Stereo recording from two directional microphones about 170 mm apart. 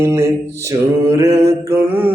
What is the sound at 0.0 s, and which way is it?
Mantra, 15° right (ahead or behind).